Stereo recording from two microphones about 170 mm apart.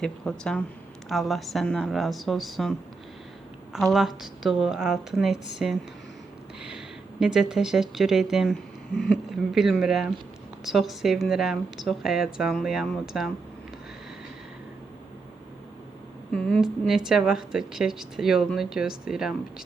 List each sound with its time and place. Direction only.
0.0 s a woman's voice: 5° left (ahead or behind)
3.9 s a woman's voice: centre (ahead or behind)
6.6 s a woman's voice: 5° right (ahead or behind)
16.3 s a woman's voice: 5° left (ahead or behind)